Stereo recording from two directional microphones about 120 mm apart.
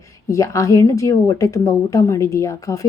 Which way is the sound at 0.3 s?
25° left (ahead or behind).